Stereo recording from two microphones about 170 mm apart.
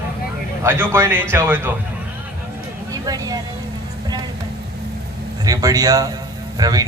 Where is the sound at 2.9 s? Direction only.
20° right (ahead or behind).